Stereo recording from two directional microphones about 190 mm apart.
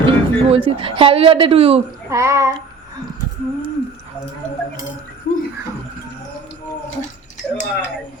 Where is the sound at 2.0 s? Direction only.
15° right (ahead or behind).